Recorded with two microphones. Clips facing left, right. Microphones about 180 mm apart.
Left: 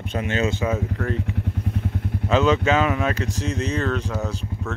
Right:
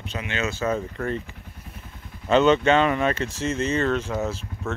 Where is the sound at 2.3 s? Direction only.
Centre (ahead or behind).